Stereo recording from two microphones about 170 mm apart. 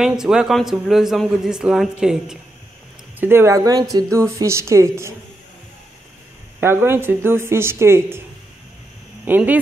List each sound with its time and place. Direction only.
0.0 s a man's voice: 5° right (ahead or behind)
3.2 s speech: 15° right (ahead or behind)
6.6 s speech: 15° right (ahead or behind)
9.2 s speech: 10° right (ahead or behind)